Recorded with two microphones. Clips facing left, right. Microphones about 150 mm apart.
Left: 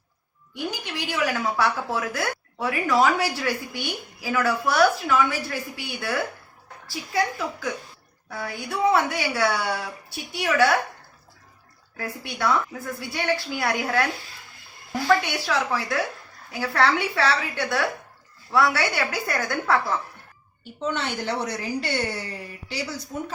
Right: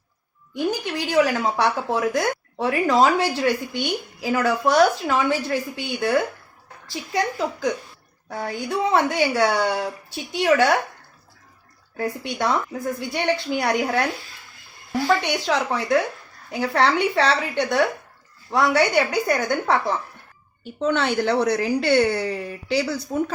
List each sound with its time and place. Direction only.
0.5 s a woman's voice: 45° right (ahead or behind)
1.9 s speech: 20° right (ahead or behind)
7.1 s speech: 30° right (ahead or behind)
8.3 s speech: 45° right (ahead or behind)
10.3 s speech: 25° right (ahead or behind)
11.9 s speech: 25° right (ahead or behind)
20.7 s a woman's voice: 70° right (ahead or behind)